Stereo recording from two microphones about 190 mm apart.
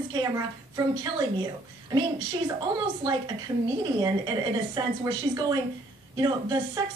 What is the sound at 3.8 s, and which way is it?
A woman's voice, 20° right (ahead or behind).